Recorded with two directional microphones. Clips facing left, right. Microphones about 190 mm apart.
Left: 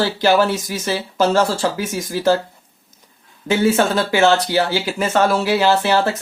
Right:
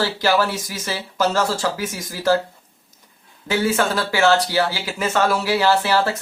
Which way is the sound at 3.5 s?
25° left (ahead or behind).